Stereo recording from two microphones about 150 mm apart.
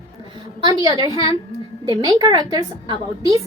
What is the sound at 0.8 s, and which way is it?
A woman's voice, 25° right (ahead or behind).